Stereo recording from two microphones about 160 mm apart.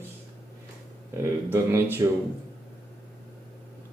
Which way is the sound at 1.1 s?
15° right (ahead or behind).